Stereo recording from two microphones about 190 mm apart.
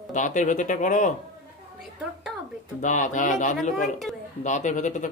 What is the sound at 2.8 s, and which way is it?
Speech, 40° left (ahead or behind).